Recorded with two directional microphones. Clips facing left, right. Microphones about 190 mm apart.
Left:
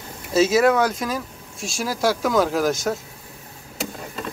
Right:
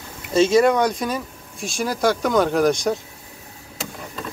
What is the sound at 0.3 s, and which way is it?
Speech, 5° left (ahead or behind).